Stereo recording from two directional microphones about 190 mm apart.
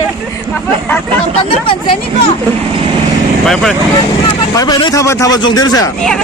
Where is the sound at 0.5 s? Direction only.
10° left (ahead or behind).